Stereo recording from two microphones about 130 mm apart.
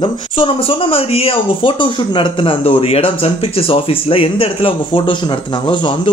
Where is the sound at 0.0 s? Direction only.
45° left (ahead or behind).